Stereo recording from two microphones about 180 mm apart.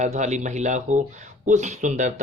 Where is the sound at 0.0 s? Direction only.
40° right (ahead or behind).